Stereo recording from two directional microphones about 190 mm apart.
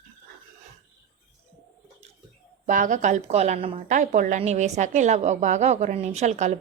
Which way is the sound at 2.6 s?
40° right (ahead or behind).